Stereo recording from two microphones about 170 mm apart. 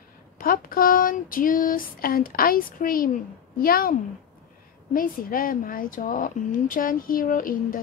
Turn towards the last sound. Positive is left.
turn(degrees=55)  # may be behind; listen again after turning